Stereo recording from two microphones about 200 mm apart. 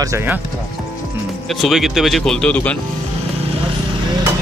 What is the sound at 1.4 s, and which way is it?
Speech, centre (ahead or behind).